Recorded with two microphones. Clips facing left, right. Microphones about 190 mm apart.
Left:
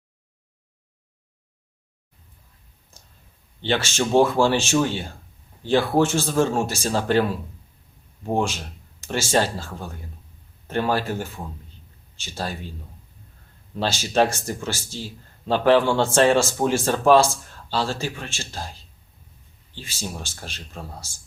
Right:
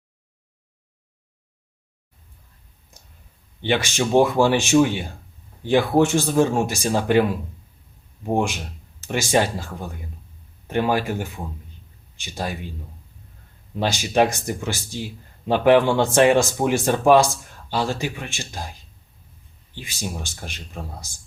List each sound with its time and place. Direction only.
3.6 s speech: 15° right (ahead or behind)
13.7 s speech: 15° right (ahead or behind)
19.7 s speech: 15° right (ahead or behind)